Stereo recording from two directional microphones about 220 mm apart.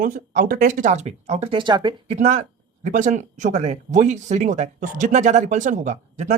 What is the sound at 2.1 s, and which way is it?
Speech, 35° right (ahead or behind).